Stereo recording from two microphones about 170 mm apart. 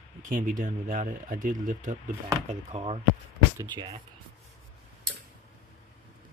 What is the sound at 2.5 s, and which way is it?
Chopping, 35° right (ahead or behind).